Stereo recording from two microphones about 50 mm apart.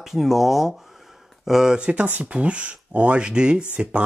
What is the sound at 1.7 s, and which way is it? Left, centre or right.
Speech, right.